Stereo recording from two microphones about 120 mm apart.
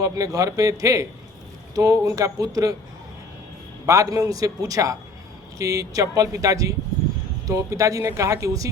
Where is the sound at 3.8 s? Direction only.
25° right (ahead or behind).